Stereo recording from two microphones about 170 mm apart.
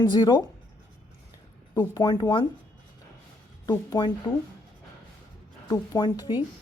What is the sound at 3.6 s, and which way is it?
Speech, 25° left (ahead or behind).